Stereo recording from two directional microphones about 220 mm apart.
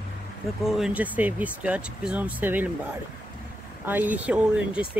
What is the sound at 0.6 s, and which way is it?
Speech, centre (ahead or behind).